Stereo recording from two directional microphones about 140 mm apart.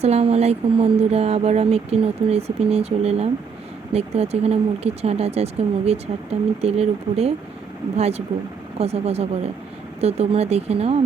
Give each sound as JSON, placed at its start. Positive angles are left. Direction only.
{"t": 0.0, "sound": "speech", "side_deg": -45}